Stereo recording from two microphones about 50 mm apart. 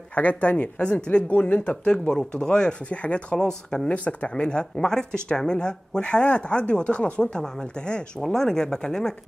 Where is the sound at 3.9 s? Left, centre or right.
Left.